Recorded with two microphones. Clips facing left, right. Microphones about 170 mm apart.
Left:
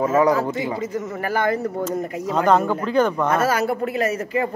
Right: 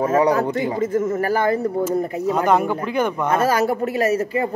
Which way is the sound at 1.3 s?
30° right (ahead or behind).